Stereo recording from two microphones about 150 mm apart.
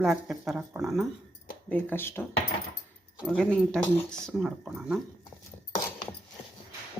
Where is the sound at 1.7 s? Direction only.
15° left (ahead or behind).